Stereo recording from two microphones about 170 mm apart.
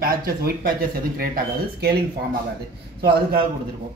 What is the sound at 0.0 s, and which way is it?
Speech, 60° right (ahead or behind).